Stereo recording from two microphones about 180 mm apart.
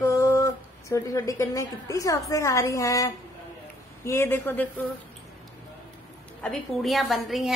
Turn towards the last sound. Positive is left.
turn(degrees=0)  # may be behind; listen again after turning